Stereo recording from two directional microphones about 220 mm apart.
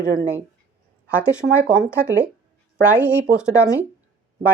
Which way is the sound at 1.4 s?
50° right (ahead or behind).